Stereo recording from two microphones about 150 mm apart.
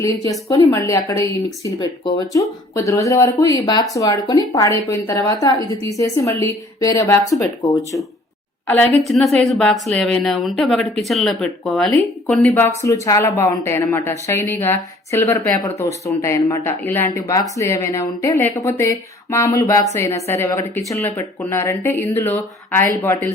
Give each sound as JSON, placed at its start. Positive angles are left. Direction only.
{"t": 0.0, "sound": "a woman's voice", "side_deg": 20}
{"t": 8.6, "sound": "a woman's voice", "side_deg": 10}
{"t": 12.5, "sound": "a woman's voice", "side_deg": 15}